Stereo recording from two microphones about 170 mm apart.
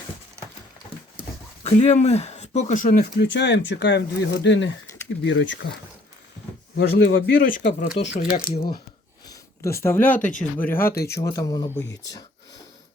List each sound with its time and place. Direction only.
1.6 s speech: 40° left (ahead or behind); by 5.7 s 90° left
6.7 s speech: 70° left (ahead or behind); by 8.0 s 45° left (ahead or behind)
8.4 s speech: 30° left (ahead or behind)
9.2 s speech: 20° left (ahead or behind)